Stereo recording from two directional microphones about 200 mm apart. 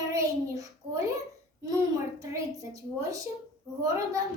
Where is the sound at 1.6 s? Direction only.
15° right (ahead or behind).